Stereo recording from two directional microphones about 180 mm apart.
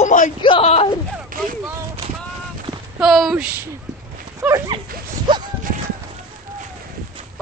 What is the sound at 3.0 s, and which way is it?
Speech, centre (ahead or behind).